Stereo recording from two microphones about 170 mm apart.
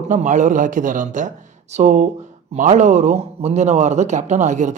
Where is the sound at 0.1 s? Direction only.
45° right (ahead or behind).